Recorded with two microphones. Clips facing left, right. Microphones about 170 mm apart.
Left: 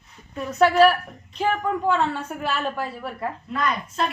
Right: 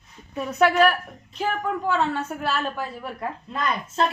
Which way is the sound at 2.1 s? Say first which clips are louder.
Right 1 dB; 10° left (ahead or behind).